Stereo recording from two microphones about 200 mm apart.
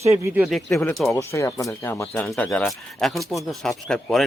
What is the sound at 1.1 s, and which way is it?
Speech, 15° left (ahead or behind).